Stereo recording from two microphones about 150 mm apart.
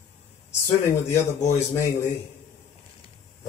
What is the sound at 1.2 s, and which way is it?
Speech, 20° left (ahead or behind).